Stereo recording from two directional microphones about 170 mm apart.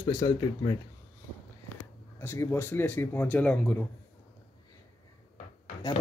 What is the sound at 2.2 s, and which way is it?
Speech, 15° left (ahead or behind).